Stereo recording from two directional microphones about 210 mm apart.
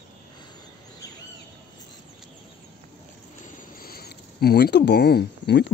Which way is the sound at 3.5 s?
45° left (ahead or behind).